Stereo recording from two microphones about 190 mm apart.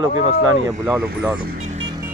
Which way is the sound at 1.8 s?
20° right (ahead or behind).